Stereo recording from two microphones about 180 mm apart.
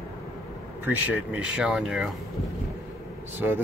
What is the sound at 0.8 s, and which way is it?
Speech, 5° right (ahead or behind).